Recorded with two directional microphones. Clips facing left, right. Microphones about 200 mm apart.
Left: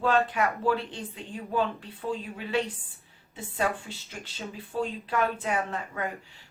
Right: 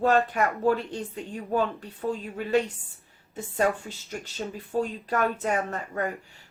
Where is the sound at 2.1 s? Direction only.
45° right (ahead or behind).